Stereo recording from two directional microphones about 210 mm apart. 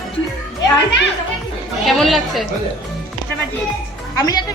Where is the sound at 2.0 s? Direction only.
Centre (ahead or behind).